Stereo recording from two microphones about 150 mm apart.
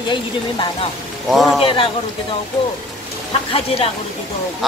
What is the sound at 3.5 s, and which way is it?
Speech, 40° left (ahead or behind).